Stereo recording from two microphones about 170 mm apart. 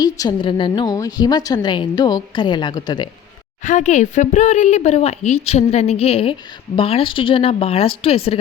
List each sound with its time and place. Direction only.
0.0 s a woman's voice: 25° left (ahead or behind)
3.6 s speech: 45° left (ahead or behind)